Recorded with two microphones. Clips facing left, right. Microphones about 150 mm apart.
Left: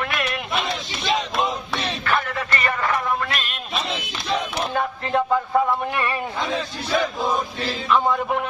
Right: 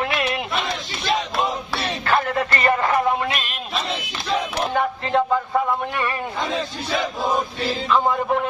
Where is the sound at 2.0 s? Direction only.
30° right (ahead or behind).